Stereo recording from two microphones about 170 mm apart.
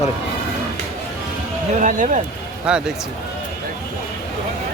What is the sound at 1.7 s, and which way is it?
Speech, 50° right (ahead or behind).